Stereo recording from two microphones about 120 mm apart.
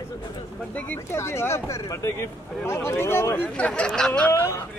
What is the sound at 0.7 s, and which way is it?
Speech, 15° left (ahead or behind).